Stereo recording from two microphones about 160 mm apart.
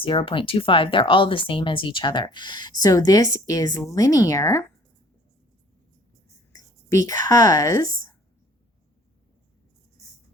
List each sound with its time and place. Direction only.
0.0 s speech: 35° left (ahead or behind)
7.1 s speech: 20° left (ahead or behind)